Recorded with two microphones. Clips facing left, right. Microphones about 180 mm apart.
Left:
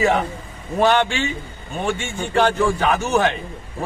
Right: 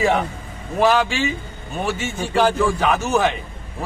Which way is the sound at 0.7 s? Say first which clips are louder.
Even; centre (ahead or behind).